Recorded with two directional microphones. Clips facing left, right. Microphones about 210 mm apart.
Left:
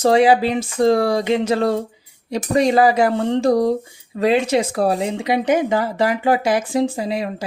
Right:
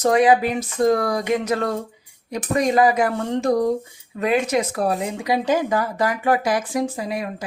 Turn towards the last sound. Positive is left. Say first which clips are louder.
# left 4 dB
turn(degrees=25)  # may be behind; listen again after turning